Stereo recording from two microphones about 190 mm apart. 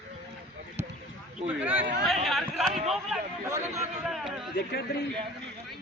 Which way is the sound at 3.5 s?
15° right (ahead or behind).